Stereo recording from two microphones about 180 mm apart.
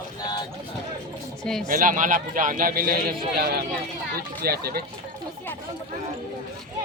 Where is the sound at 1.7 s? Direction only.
50° right (ahead or behind).